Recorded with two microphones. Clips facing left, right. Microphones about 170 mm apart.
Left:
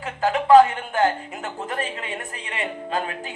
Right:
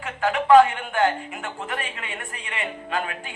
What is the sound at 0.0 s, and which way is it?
A man's voice, 35° left (ahead or behind).